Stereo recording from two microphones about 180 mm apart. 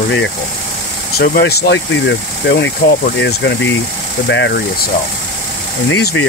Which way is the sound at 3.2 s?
75° left (ahead or behind).